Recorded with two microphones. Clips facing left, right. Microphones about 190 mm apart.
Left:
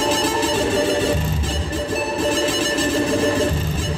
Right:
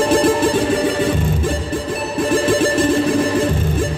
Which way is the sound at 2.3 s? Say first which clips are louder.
Right 5 dB; 55° right (ahead or behind).